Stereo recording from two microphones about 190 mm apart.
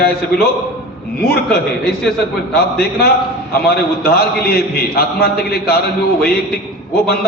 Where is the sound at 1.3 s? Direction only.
55° left (ahead or behind).